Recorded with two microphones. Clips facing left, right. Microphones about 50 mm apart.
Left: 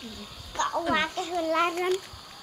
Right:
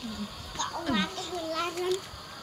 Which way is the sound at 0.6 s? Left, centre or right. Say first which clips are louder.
Left 6 dB; left.